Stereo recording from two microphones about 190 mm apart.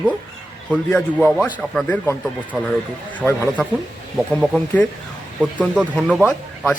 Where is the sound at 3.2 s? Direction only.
10° left (ahead or behind).